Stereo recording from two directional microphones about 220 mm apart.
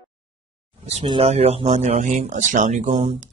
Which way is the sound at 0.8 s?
25° right (ahead or behind).